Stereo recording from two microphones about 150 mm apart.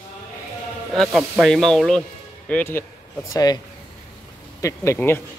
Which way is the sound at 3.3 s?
25° left (ahead or behind).